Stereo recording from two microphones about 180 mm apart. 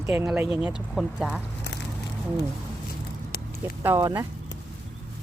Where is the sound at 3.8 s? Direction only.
15° right (ahead or behind).